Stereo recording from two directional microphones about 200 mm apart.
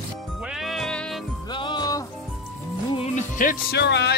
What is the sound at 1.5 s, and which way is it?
Music, 20° left (ahead or behind).